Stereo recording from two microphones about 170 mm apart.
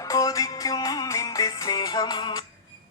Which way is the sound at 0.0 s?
20° left (ahead or behind).